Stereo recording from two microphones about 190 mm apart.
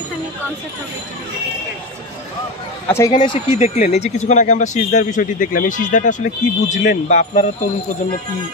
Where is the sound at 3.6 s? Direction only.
40° left (ahead or behind).